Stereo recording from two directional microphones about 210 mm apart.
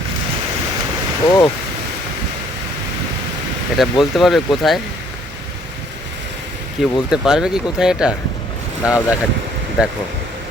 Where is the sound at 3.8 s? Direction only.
Centre (ahead or behind).